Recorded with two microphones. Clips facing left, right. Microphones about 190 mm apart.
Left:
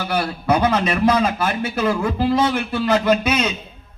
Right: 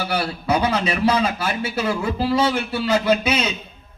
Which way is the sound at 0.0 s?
50° left (ahead or behind).